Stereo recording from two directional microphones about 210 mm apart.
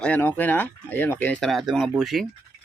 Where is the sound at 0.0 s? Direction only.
10° left (ahead or behind).